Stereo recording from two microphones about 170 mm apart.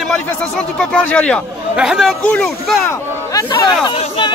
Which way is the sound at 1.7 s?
5° right (ahead or behind).